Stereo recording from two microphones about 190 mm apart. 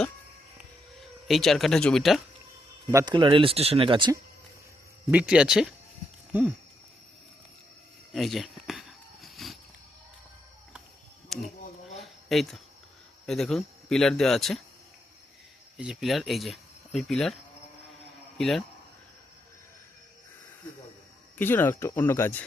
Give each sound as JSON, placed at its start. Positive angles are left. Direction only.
{"t": 1.3, "sound": "speech", "side_deg": 0}
{"t": 2.9, "sound": "speech", "side_deg": -20}
{"t": 5.1, "sound": "speech", "side_deg": -5}
{"t": 8.1, "sound": "a sound", "side_deg": 0}
{"t": 12.3, "sound": "speech", "side_deg": 0}
{"t": 15.8, "sound": "speech", "side_deg": 0}
{"t": 18.3, "sound": "speech", "side_deg": 0}
{"t": 21.3, "sound": "speech", "side_deg": 10}